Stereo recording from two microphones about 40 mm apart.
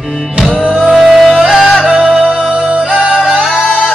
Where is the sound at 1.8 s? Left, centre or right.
Right.